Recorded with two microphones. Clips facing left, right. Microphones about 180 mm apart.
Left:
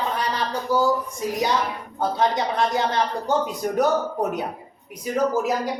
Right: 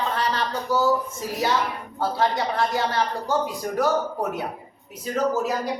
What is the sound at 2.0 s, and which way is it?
A man's voice, 20° left (ahead or behind).